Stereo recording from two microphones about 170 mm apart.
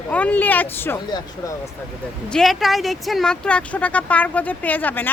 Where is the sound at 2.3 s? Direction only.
Centre (ahead or behind).